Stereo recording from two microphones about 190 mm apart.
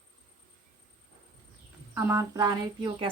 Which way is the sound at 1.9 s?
15° right (ahead or behind).